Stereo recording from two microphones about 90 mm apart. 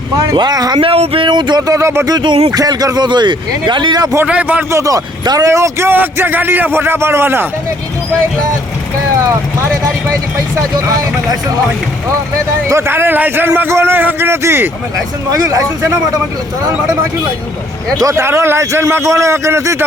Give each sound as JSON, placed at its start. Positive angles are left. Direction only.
{"t": 0.3, "sound": "speech", "side_deg": -50}
{"t": 0.8, "sound": "speech", "side_deg": -85}
{"t": 1.6, "sound": "a man's voice", "side_deg": -35}
{"t": 2.0, "sound": "speech", "side_deg": -55}
{"t": 2.5, "sound": "speech", "side_deg": -40}
{"t": 4.3, "sound": "speech", "side_deg": -15}
{"t": 4.7, "sound": "a man's voice", "side_deg": -40}
{"t": 5.5, "sound": "a man's voice", "side_deg": -30}
{"t": 10.8, "sound": "a man's voice", "side_deg": -40}
{"t": 12.6, "sound": "a man's voice", "side_deg": -30}
{"t": 15.3, "sound": "a man's voice", "side_deg": -40}
{"t": 18.0, "sound": "a man's voice", "side_deg": -30}